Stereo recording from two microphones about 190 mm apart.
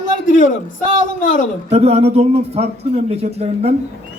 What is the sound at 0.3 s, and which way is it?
A man's voice, 45° left (ahead or behind).